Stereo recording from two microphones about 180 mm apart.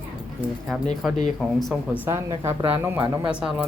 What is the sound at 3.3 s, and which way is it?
Speech, 5° right (ahead or behind).